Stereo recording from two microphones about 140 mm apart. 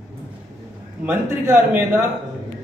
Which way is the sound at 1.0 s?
15° right (ahead or behind).